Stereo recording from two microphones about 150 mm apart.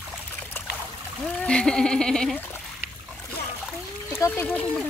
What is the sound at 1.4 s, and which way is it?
Speech, 5° left (ahead or behind).